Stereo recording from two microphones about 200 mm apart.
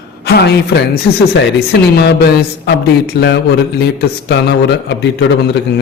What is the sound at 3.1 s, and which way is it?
Speech, 55° left (ahead or behind).